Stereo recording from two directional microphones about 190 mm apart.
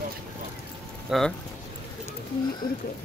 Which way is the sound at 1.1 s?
Centre (ahead or behind).